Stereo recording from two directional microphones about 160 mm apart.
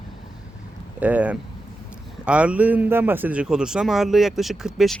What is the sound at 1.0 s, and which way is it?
A man's voice, 10° right (ahead or behind).